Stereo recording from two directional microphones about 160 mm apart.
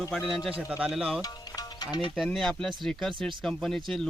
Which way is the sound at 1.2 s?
25° left (ahead or behind).